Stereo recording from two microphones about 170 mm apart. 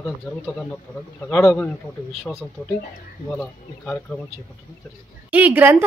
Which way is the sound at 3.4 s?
5° left (ahead or behind).